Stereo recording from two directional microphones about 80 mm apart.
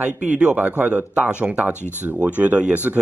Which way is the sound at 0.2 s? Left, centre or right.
Centre.